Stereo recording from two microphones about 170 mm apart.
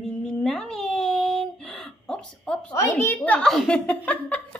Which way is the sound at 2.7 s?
15° left (ahead or behind).